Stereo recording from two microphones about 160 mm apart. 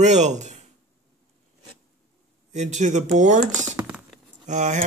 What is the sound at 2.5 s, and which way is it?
Speech, 45° right (ahead or behind).